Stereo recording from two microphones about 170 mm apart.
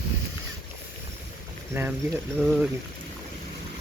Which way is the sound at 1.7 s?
15° right (ahead or behind).